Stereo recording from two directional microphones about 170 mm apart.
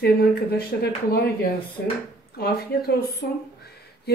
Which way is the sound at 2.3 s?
65° left (ahead or behind).